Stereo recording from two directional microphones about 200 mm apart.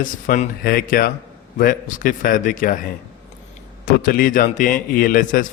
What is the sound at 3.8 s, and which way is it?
A man's voice, 45° left (ahead or behind).